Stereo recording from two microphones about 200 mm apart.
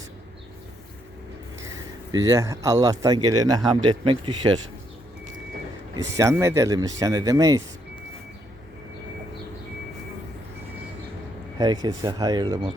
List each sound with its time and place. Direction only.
2.1 s speech: 15° right (ahead or behind)
6.1 s speech: 15° right (ahead or behind)
11.5 s speech: 20° right (ahead or behind)